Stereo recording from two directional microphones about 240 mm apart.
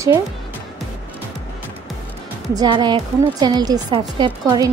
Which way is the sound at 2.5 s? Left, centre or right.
Centre.